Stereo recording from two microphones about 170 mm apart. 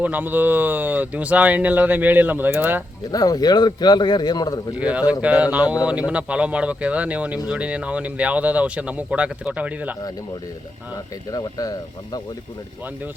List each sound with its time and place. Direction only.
0.0 s speech: 10° right (ahead or behind)
3.1 s a man's voice: 20° left (ahead or behind)
4.8 s speech: 10° right (ahead or behind)
11.3 s a man's voice: 20° left (ahead or behind)